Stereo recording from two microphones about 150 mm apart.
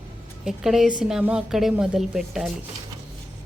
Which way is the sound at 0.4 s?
Centre (ahead or behind).